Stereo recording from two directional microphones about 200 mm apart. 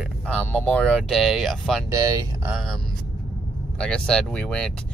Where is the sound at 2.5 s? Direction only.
Centre (ahead or behind).